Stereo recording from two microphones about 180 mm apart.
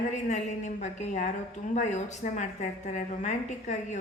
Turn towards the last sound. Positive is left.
turn(degrees=40)  # may be behind; listen again after turning